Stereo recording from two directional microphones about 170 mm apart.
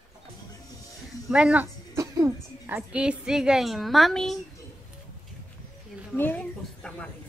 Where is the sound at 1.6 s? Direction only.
15° right (ahead or behind); by 4.4 s centre (ahead or behind).